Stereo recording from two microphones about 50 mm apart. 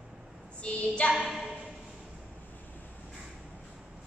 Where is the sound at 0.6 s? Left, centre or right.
Left.